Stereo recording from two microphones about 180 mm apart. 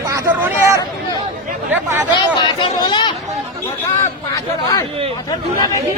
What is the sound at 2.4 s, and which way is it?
Speech, 25° left (ahead or behind).